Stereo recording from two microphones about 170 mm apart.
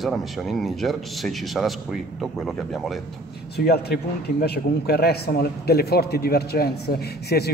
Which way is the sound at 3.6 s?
70° left (ahead or behind).